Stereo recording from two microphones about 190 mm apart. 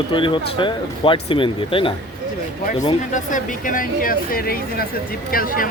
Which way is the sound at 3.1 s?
45° left (ahead or behind).